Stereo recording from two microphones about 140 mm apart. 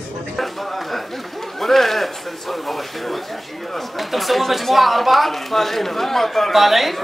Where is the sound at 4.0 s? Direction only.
Centre (ahead or behind).